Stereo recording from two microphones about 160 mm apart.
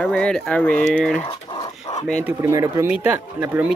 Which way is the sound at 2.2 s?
15° right (ahead or behind).